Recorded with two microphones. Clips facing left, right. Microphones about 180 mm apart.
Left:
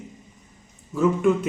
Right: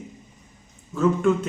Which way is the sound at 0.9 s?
15° left (ahead or behind).